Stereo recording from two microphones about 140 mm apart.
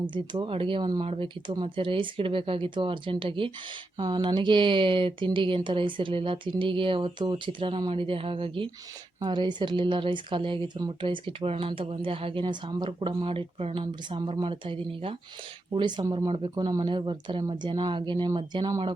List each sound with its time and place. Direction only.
0.1 s speech: 40° right (ahead or behind)
16.3 s speech: 40° right (ahead or behind)